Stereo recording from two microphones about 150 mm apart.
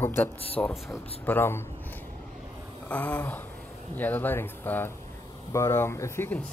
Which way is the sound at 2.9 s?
10° left (ahead or behind).